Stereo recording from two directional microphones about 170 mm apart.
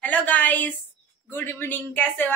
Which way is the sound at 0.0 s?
10° left (ahead or behind).